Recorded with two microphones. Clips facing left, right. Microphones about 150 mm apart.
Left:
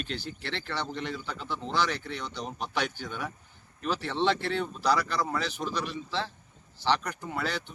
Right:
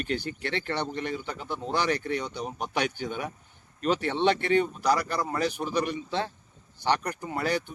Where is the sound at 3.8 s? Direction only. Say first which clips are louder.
Right 5 dB; 60° right (ahead or behind).